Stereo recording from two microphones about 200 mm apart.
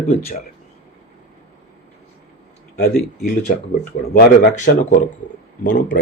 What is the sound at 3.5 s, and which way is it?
Speech, 40° left (ahead or behind).